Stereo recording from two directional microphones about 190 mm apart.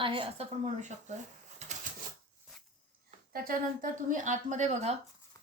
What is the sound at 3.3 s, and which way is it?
A woman's voice, 50° right (ahead or behind).